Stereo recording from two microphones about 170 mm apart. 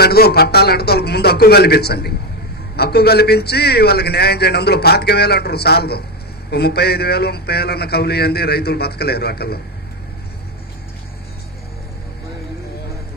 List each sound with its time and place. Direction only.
0.0 s a man's voice: 70° left (ahead or behind)